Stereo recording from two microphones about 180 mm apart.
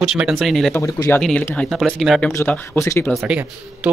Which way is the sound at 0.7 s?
15° left (ahead or behind).